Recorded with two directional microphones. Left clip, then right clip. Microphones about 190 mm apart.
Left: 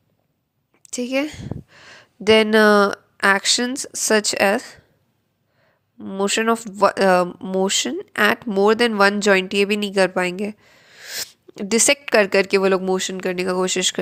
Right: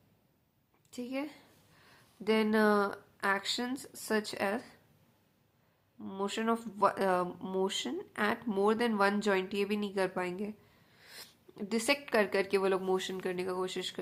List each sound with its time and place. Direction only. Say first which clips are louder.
0.9 s speech: left 16 dB; 35° left (ahead or behind)
6.0 s speech: left 15 dB; 30° left (ahead or behind)
7.3 s speech: left 13 dB; 20° left (ahead or behind); by 14.0 s 35° left (ahead or behind)